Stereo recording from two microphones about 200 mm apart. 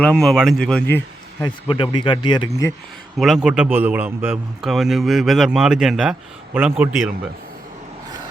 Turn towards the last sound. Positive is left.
turn(degrees=-10)  # may be behind; listen again after turning